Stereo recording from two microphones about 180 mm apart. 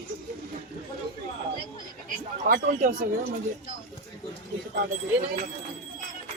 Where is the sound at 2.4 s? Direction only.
50° right (ahead or behind).